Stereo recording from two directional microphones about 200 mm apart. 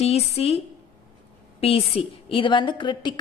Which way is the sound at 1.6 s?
30° left (ahead or behind).